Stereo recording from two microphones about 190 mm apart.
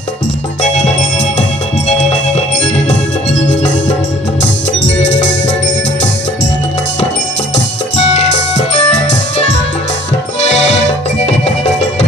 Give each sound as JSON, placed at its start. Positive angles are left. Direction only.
{"t": 0.6, "sound": "music", "side_deg": 35}
{"t": 7.9, "sound": "music", "side_deg": 35}